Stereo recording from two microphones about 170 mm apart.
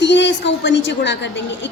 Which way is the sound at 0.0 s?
90° left.